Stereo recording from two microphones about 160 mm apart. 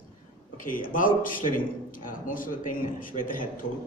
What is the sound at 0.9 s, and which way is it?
A man's voice, 60° left (ahead or behind).